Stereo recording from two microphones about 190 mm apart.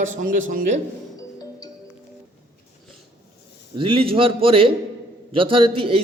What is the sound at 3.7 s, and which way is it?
A man's voice, 25° right (ahead or behind).